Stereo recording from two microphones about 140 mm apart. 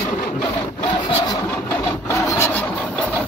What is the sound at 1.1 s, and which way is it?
Vehicle, 30° left (ahead or behind).